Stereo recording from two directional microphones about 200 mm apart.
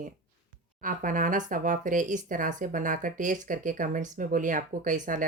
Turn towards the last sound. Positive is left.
turn(degrees=-40)  # may be behind; listen again after turning